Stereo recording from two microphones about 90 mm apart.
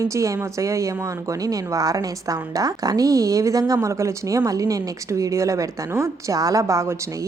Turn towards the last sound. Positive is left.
turn(degrees=-35)  # may be behind; listen again after turning